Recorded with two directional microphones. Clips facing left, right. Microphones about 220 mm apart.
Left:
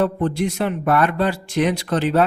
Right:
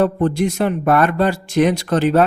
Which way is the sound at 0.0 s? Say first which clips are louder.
Right 3 dB; 45° right (ahead or behind).